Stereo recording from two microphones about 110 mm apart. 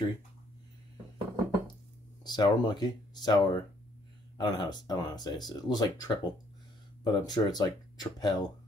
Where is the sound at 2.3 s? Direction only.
40° left (ahead or behind).